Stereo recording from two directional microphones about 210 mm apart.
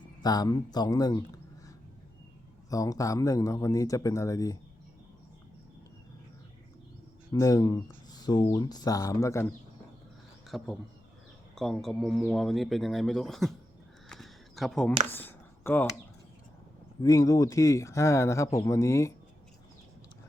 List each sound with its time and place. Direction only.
0.2 s speech: 20° left (ahead or behind)
2.6 s speech: 15° left (ahead or behind)
7.3 s speech: 15° left (ahead or behind)
10.5 s speech: centre (ahead or behind)
14.1 s a sound: centre (ahead or behind)
17.0 s speech: 15° left (ahead or behind)